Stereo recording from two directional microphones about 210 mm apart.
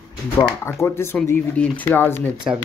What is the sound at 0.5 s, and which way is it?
A man's voice, 10° left (ahead or behind).